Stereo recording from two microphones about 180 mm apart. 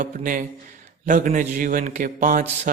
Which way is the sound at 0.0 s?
50° right (ahead or behind).